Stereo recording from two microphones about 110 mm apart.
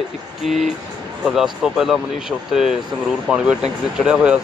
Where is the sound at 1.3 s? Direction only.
5° right (ahead or behind).